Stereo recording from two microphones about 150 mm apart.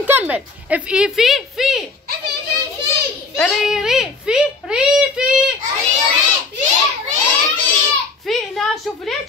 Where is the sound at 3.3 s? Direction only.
Centre (ahead or behind).